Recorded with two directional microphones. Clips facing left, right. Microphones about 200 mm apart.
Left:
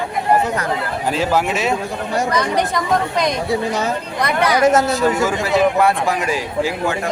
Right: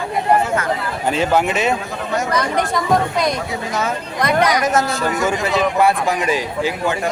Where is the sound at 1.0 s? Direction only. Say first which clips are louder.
Right 2 dB; centre (ahead or behind).